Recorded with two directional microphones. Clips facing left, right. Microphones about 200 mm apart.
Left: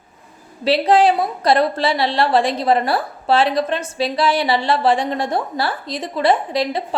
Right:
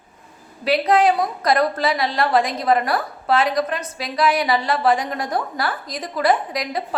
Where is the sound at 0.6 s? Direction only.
30° left (ahead or behind).